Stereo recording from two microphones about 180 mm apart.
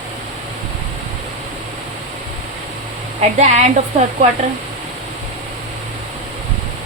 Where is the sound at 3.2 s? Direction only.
40° right (ahead or behind).